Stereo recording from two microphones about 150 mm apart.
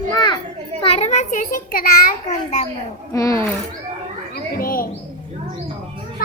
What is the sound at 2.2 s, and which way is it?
Speech, 50° left (ahead or behind).